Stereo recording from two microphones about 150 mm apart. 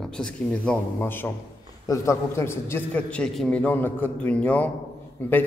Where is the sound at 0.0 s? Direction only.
5° left (ahead or behind).